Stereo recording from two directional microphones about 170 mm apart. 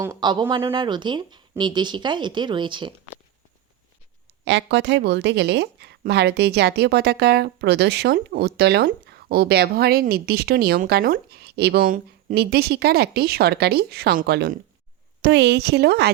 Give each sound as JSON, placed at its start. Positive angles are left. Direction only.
{"t": 0.0, "sound": "speech", "side_deg": -20}
{"t": 4.4, "sound": "a woman's voice", "side_deg": -90}
{"t": 15.2, "sound": "speech", "side_deg": -80}